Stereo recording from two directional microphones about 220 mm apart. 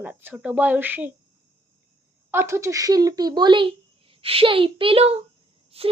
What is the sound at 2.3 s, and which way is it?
Speech, 10° right (ahead or behind).